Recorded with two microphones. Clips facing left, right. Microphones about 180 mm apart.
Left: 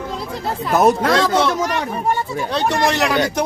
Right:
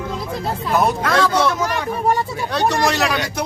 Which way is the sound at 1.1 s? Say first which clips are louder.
Even; 20° left (ahead or behind).